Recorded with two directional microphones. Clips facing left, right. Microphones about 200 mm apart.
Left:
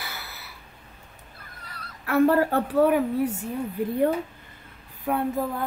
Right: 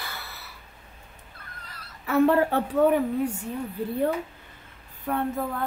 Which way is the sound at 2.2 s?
40° left (ahead or behind).